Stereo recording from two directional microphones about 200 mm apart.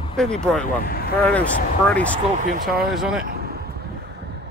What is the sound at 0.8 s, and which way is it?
Vehicle, 50° left (ahead or behind).